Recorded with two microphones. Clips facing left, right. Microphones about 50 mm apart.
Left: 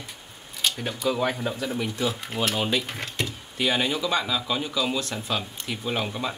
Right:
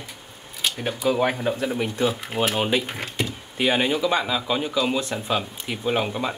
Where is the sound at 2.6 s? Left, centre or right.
Centre.